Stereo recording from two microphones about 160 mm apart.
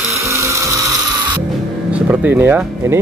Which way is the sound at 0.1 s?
20° right (ahead or behind).